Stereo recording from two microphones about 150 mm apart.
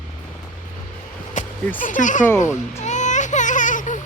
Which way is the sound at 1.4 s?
55° left (ahead or behind).